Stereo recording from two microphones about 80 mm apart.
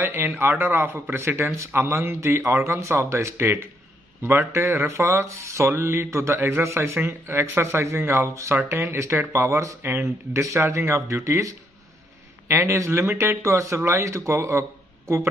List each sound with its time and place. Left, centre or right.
0.0 s speech: right